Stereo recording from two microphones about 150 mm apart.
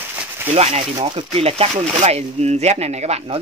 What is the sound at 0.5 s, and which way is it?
Speech, 40° right (ahead or behind).